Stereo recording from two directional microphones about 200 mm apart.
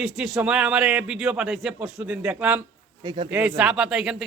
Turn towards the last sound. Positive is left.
turn(degrees=0)  # may be behind; listen again after turning